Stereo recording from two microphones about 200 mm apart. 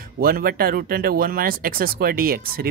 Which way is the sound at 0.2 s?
50° right (ahead or behind).